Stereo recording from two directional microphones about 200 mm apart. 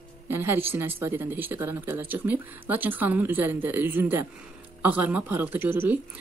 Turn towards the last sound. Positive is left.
turn(degrees=-10)  # may be behind; listen again after turning